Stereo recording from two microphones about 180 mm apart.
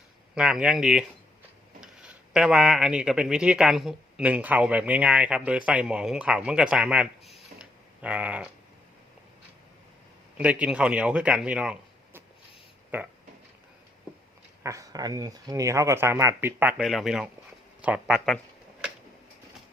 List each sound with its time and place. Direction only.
0.3 s speech: 5° right (ahead or behind)
7.3 s a sound: 5° right (ahead or behind)
10.3 s speech: 5° right (ahead or behind)
14.6 s speech: 15° right (ahead or behind)